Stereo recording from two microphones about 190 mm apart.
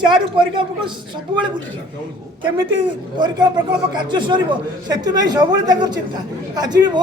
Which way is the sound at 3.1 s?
20° right (ahead or behind).